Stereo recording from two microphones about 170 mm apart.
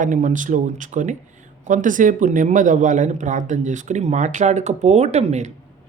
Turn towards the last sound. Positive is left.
turn(degrees=-40)  # may be behind; listen again after turning